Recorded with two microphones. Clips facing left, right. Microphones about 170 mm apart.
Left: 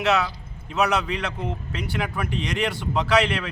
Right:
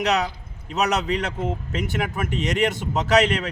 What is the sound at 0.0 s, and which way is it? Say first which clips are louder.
A man's voice: even; 40° right (ahead or behind).